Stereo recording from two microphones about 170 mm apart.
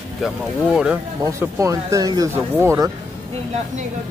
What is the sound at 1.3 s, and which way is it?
Speech, 20° right (ahead or behind).